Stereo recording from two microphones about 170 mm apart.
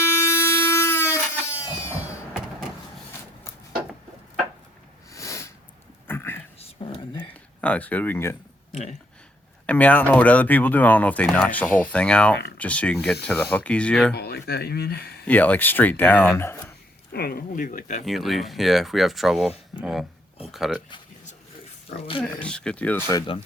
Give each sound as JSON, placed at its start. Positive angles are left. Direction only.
{"t": 0.0, "sound": "vehicle", "side_deg": 15}
{"t": 5.1, "sound": "sniff", "side_deg": 20}
{"t": 6.1, "sound": "whispering", "side_deg": 15}
{"t": 6.6, "sound": "whispering", "side_deg": 35}
{"t": 7.6, "sound": "speech", "side_deg": 10}
{"t": 8.7, "sound": "speech", "side_deg": 40}
{"t": 9.6, "sound": "speech", "side_deg": 10}
{"t": 14.1, "sound": "speech", "side_deg": 70}
{"t": 15.3, "sound": "speech", "side_deg": 10}
{"t": 17.1, "sound": "speech", "side_deg": 65}
{"t": 18.0, "sound": "speech", "side_deg": 0}
{"t": 21.8, "sound": "speech", "side_deg": 35}
{"t": 22.4, "sound": "speech", "side_deg": 5}